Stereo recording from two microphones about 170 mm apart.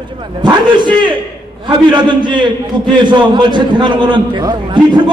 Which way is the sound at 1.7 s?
30° right (ahead or behind).